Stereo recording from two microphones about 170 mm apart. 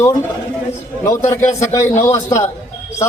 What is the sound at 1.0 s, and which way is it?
A man's voice, 15° left (ahead or behind).